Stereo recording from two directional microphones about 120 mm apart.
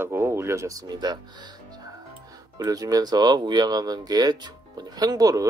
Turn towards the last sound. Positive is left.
turn(degrees=-30)  # may be behind; listen again after turning